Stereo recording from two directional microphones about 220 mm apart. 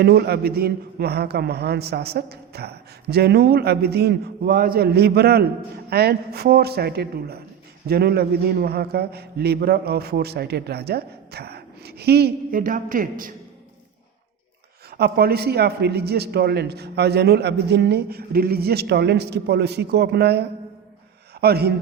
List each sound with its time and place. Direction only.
0.0 s a man's voice: 50° right (ahead or behind)
14.8 s a man's voice: 45° right (ahead or behind)